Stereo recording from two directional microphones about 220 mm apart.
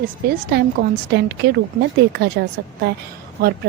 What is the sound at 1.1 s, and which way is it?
Speech, 50° right (ahead or behind).